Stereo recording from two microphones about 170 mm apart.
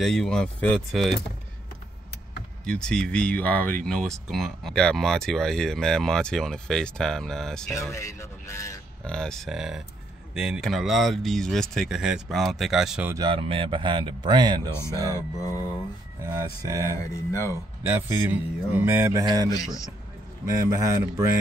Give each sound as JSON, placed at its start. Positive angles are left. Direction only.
{"t": 0.0, "sound": "speech", "side_deg": 0}
{"t": 2.6, "sound": "speech", "side_deg": 5}
{"t": 7.9, "sound": "speech", "side_deg": 15}
{"t": 9.0, "sound": "speech", "side_deg": 5}
{"t": 13.1, "sound": "speech", "side_deg": -30}
{"t": 16.3, "sound": "speech", "side_deg": -20}
{"t": 17.0, "sound": "speech", "side_deg": 15}
{"t": 17.8, "sound": "speech", "side_deg": -15}
{"t": 19.5, "sound": "a man's voice", "side_deg": 20}
{"t": 20.4, "sound": "speech", "side_deg": -20}